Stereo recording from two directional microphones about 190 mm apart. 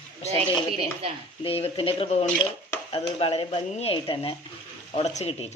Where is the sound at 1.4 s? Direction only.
30° left (ahead or behind).